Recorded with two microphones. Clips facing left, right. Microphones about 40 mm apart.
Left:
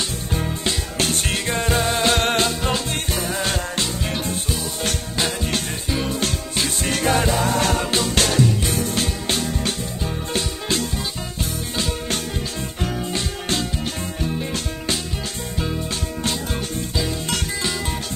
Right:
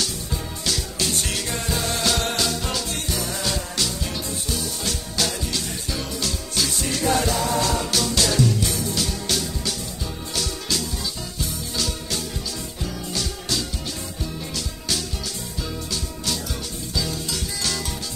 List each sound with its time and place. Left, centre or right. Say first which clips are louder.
0.9 s music: left 3 dB; left
6.2 s music: left 2 dB; left
11.7 s music: left 4 dB; left